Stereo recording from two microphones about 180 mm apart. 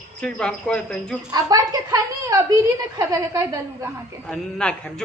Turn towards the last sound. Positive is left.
turn(degrees=5)  # may be behind; listen again after turning